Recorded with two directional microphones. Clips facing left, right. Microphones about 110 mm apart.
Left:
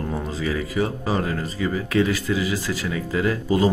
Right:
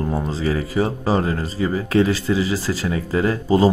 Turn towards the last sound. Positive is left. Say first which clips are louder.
# right 3 dB
turn(degrees=-35)  # may be behind; listen again after turning